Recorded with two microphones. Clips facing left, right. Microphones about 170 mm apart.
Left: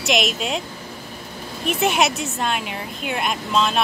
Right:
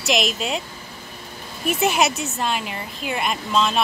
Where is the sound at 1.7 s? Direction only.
Centre (ahead or behind).